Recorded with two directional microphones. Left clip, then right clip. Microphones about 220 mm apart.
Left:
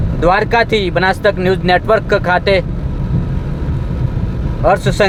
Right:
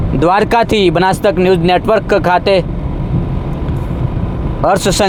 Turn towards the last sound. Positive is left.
turn(degrees=-25)  # may be behind; listen again after turning